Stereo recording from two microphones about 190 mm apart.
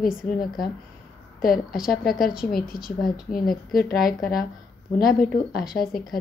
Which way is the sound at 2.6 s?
50° left (ahead or behind).